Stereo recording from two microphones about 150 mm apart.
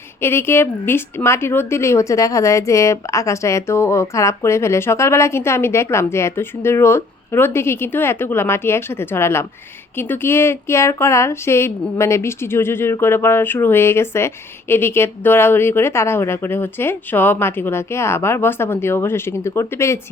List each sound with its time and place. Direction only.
0.2 s a woman's voice: 15° left (ahead or behind)